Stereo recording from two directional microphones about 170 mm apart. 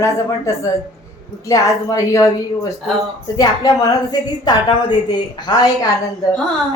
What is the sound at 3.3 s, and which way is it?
A woman's voice, 20° left (ahead or behind).